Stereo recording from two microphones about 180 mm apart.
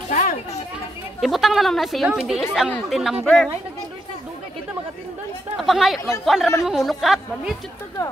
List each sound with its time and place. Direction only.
0.1 s children playing: 45° left (ahead or behind)
1.2 s speech: centre (ahead or behind)
5.6 s speech: centre (ahead or behind)